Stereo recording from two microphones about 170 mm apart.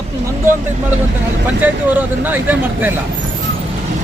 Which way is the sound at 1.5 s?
10° right (ahead or behind).